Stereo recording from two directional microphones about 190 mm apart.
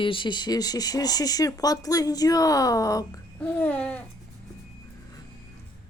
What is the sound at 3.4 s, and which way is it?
Babbling, 10° left (ahead or behind).